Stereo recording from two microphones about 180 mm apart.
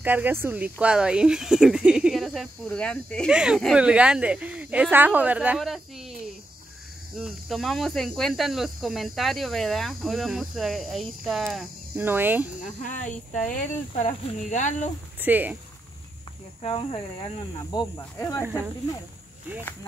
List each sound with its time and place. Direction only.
0.0 s speech: 10° right (ahead or behind); by 3.3 s 5° left (ahead or behind)
3.3 s speech: 5° right (ahead or behind)
7.2 s speech: centre (ahead or behind)
12.6 s speech: 45° left (ahead or behind)
15.1 s speech: 10° right (ahead or behind)
16.6 s speech: 30° left (ahead or behind)
17.6 s speech: 20° left (ahead or behind)